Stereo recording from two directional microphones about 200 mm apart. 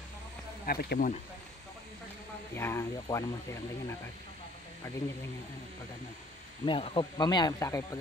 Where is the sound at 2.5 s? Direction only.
10° left (ahead or behind).